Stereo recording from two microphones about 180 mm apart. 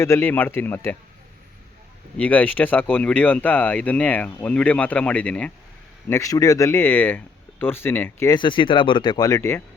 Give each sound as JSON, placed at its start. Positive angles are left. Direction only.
{"t": 0.0, "sound": "speech", "side_deg": 15}
{"t": 2.1, "sound": "speech", "side_deg": 10}
{"t": 6.1, "sound": "speech", "side_deg": 15}